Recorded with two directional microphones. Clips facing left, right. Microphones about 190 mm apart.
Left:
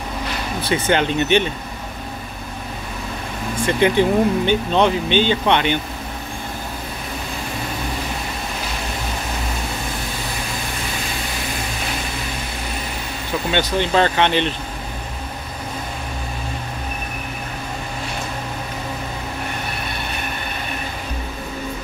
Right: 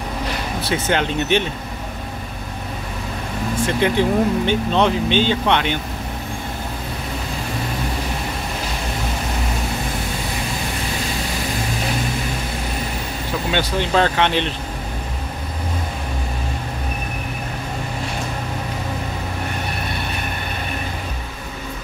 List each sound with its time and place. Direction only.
0.7 s speech: 5° right (ahead or behind)
3.6 s speech: centre (ahead or behind)
13.5 s speech: centre (ahead or behind)